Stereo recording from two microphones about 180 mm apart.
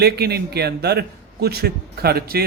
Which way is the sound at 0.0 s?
65° right (ahead or behind).